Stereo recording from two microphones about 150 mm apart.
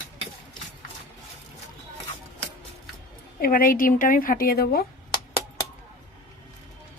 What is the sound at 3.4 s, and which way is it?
A woman's voice, 75° left (ahead or behind).